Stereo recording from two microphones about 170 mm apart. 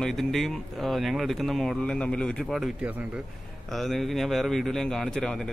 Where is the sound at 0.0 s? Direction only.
Centre (ahead or behind).